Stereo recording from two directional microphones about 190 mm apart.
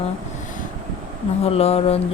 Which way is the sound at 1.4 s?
30° left (ahead or behind).